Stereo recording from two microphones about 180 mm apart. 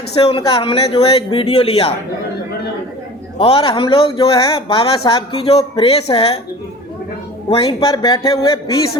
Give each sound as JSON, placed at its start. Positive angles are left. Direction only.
{"t": 0.2, "sound": "speech", "side_deg": 30}
{"t": 3.3, "sound": "a man's voice", "side_deg": 30}
{"t": 7.5, "sound": "a man's voice", "side_deg": 30}